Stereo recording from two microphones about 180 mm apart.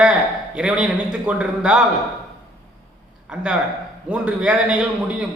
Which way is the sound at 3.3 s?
5° right (ahead or behind).